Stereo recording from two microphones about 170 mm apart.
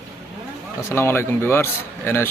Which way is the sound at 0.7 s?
15° left (ahead or behind).